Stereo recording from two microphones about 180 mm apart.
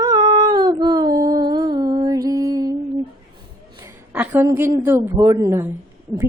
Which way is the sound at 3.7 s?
15° right (ahead or behind).